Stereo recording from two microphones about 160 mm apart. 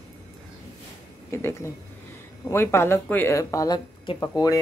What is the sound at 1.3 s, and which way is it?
A woman's voice, 15° left (ahead or behind).